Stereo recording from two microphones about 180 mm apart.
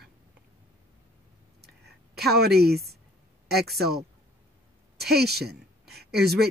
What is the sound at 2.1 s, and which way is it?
Speech, 65° right (ahead or behind).